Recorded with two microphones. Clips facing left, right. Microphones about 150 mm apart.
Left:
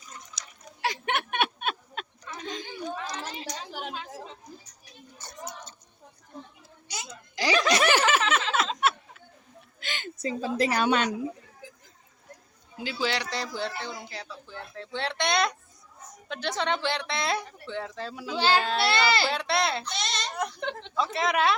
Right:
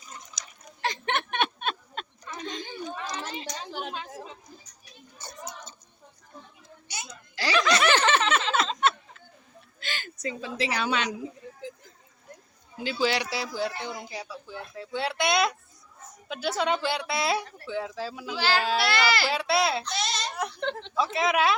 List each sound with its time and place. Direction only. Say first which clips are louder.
0.8 s a sound: even; 10° left (ahead or behind)
7.3 s chuckle: left 1 dB; 15° left (ahead or behind)
7.9 s snicker: right 1 dB; 10° left (ahead or behind)
9.8 s a sound: left 1 dB; 20° left (ahead or behind)
10.2 s a woman's voice: left 4 dB; 45° left (ahead or behind)
12.8 s speech: right 3 dB; centre (ahead or behind)
18.3 s speech: left 2 dB; 25° left (ahead or behind)
18.6 s speech: right 1 dB; 5° right (ahead or behind)
18.9 s speech: left 1 dB; 25° left (ahead or behind)
19.3 s speech: right 2 dB; 5° right (ahead or behind)
19.9 s a sound: right 2 dB; 5° right (ahead or behind)
20.6 s a sound: right 2 dB; 10° left (ahead or behind)
20.9 s a woman's voice: right 1 dB; centre (ahead or behind)